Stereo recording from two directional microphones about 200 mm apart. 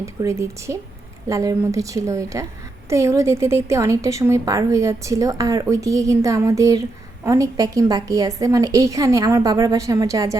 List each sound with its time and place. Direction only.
0.0 s a woman's voice: 15° right (ahead or behind)